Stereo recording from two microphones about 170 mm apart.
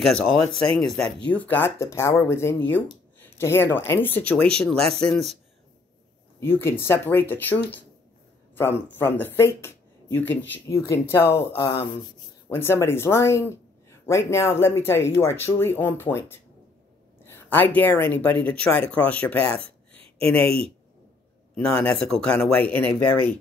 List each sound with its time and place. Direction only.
0.0 s speech: centre (ahead or behind)
6.4 s speech: 15° left (ahead or behind)